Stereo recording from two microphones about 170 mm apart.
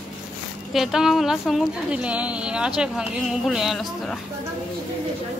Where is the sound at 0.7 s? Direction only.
Centre (ahead or behind).